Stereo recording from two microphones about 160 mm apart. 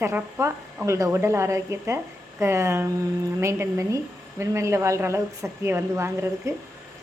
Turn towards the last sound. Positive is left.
turn(degrees=-15)  # may be behind; listen again after turning